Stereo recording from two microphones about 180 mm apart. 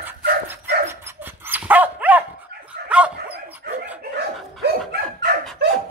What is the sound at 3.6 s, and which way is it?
Dog, 55° right (ahead or behind).